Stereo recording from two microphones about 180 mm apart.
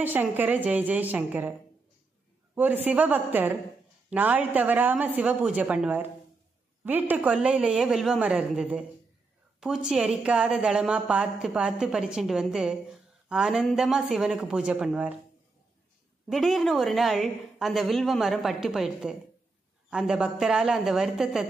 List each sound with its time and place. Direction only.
0.0 s a woman's voice: 10° right (ahead or behind)
2.5 s a woman's voice: 10° right (ahead or behind)
9.8 s a woman's voice: 5° right (ahead or behind)
16.3 s a woman's voice: centre (ahead or behind)